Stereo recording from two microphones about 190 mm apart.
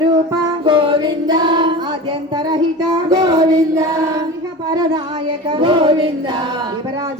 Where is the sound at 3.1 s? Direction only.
20° right (ahead or behind).